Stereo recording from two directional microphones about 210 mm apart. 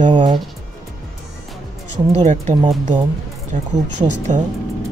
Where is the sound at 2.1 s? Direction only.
30° right (ahead or behind).